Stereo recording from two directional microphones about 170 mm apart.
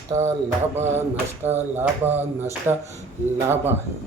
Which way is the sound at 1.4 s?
15° right (ahead or behind).